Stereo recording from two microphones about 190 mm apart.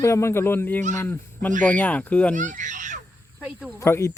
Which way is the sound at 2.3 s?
40° right (ahead or behind).